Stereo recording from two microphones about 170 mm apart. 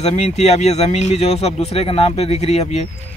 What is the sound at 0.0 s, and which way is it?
Speech, 40° left (ahead or behind).